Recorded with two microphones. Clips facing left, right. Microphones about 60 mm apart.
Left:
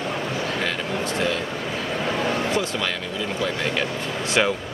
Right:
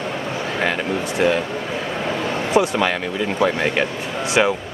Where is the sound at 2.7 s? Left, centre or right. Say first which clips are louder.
Right 6 dB; right.